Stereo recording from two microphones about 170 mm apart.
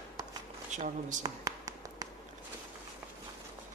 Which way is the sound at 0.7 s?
45° right (ahead or behind).